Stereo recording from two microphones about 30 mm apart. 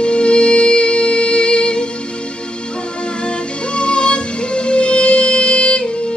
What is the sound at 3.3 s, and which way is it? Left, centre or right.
Music, left.